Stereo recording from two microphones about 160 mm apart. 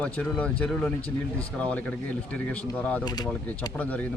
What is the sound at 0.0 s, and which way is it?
A man's voice, 10° left (ahead or behind).